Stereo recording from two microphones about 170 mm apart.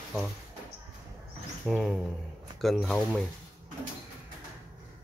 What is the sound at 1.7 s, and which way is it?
Speech, centre (ahead or behind).